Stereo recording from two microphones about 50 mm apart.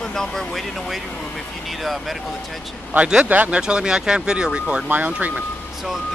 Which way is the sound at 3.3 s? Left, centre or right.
Right.